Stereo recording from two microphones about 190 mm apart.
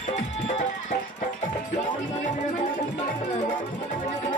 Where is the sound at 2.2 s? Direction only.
40° left (ahead or behind).